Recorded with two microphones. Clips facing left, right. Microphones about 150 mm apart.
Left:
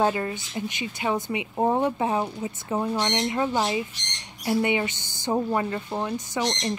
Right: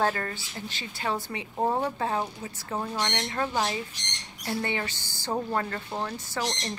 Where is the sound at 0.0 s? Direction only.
15° left (ahead or behind).